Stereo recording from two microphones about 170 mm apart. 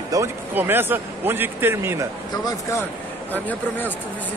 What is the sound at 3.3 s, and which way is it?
Speech, 10° left (ahead or behind).